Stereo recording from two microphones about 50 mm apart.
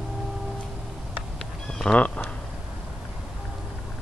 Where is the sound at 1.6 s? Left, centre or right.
Centre.